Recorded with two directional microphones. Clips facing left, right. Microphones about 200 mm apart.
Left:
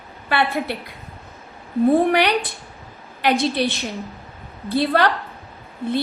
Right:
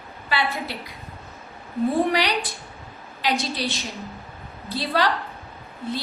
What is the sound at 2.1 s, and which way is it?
A woman's voice, 55° left (ahead or behind).